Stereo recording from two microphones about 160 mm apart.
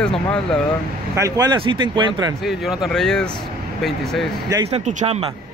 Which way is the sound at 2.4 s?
Centre (ahead or behind).